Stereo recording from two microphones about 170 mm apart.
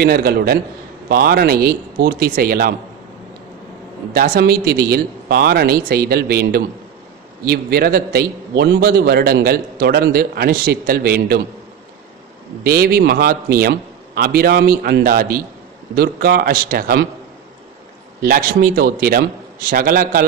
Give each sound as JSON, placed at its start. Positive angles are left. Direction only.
{"t": 0.0, "sound": "a man's voice", "side_deg": -65}
{"t": 4.1, "sound": "a man's voice", "side_deg": -60}
{"t": 12.6, "sound": "a man's voice", "side_deg": -60}
{"t": 18.2, "sound": "a man's voice", "side_deg": -60}